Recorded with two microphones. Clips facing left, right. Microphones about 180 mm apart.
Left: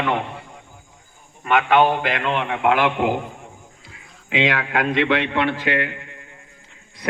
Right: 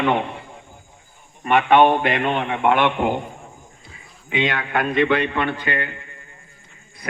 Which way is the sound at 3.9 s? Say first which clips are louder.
Left 1 dB; 90° left.